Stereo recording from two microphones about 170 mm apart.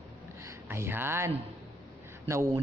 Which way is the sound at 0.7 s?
15° right (ahead or behind).